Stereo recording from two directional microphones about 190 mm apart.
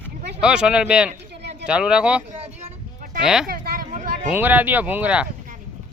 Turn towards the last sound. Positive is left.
turn(degrees=-5)  # may be behind; listen again after turning